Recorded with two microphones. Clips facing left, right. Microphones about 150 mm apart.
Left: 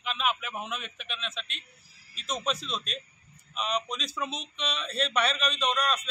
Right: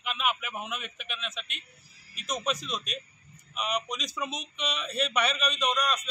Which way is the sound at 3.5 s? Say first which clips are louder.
Even; 10° right (ahead or behind).